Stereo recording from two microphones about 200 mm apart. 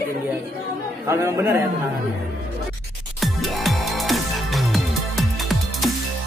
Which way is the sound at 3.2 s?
Centre (ahead or behind).